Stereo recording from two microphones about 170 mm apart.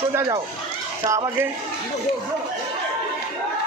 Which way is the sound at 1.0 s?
20° right (ahead or behind).